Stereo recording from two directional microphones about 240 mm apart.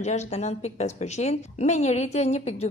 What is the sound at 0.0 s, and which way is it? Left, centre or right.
A woman's voice, left.